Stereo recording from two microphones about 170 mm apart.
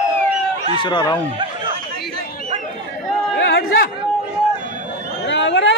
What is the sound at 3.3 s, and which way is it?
Chatter, 85° left.